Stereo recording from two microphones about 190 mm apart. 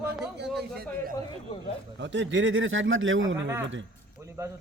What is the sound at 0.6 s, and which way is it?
Speech, 55° right (ahead or behind).